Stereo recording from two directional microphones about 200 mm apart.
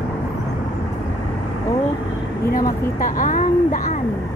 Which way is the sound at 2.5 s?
45° left (ahead or behind).